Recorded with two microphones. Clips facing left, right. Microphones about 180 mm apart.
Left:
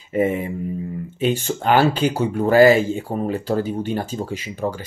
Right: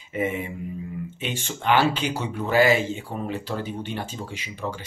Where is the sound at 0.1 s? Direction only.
40° left (ahead or behind).